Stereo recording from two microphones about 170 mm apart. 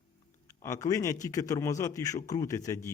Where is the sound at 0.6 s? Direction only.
20° left (ahead or behind).